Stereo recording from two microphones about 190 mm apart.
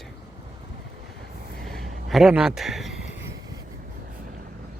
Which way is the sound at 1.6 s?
Centre (ahead or behind).